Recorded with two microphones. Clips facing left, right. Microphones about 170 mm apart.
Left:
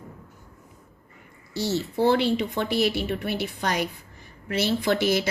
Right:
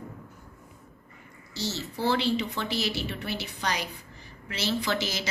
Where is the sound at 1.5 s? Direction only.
55° left (ahead or behind).